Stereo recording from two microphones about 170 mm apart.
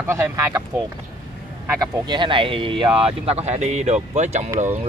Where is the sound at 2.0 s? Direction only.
25° right (ahead or behind).